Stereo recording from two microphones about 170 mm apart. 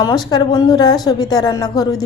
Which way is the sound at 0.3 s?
25° left (ahead or behind).